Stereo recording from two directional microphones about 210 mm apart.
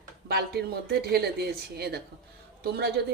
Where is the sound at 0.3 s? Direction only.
50° right (ahead or behind).